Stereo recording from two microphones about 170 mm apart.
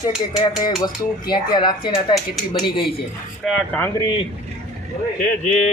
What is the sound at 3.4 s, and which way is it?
Speech, 5° left (ahead or behind).